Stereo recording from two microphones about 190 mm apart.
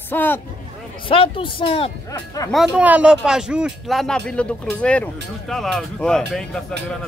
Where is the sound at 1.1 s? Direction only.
30° left (ahead or behind).